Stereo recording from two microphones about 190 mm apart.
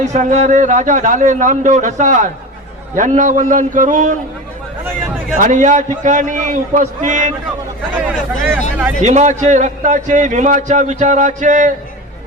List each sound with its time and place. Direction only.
0.0 s a man's voice: 40° right (ahead or behind)
5.4 s a man's voice: 40° right (ahead or behind)
7.9 s speech: 5° right (ahead or behind)
9.0 s a man's voice: 40° right (ahead or behind)